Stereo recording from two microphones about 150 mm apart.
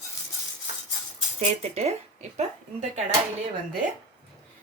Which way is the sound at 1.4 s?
45° right (ahead or behind).